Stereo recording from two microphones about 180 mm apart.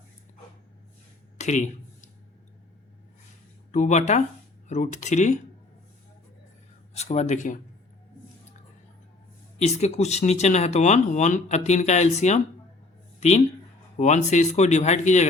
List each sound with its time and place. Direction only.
1.4 s a sound: 40° left (ahead or behind)
3.7 s speech: 40° left (ahead or behind)
6.9 s speech: 40° left (ahead or behind)
9.6 s speech: 40° left (ahead or behind)
13.1 s a sound: 40° left (ahead or behind)
14.0 s speech: 40° left (ahead or behind)